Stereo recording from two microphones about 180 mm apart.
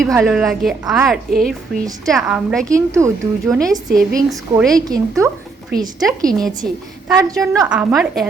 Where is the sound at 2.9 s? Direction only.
15° right (ahead or behind).